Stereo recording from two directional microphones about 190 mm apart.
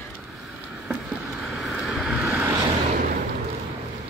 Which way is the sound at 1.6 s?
Centre (ahead or behind).